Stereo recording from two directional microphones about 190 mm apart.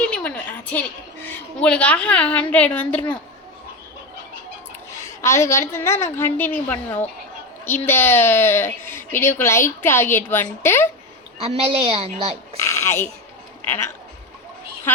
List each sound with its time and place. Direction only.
0.0 s a woman's voice: 5° left (ahead or behind)
5.2 s a woman's voice: 15° left (ahead or behind)
11.3 s a woman's voice: 30° right (ahead or behind)
12.5 s a woman's voice: 15° left (ahead or behind)